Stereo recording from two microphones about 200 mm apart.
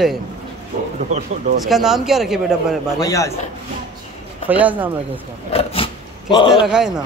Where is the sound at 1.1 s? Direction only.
35° right (ahead or behind).